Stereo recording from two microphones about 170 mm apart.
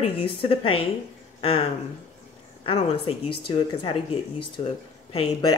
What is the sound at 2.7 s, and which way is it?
Speech, 30° left (ahead or behind).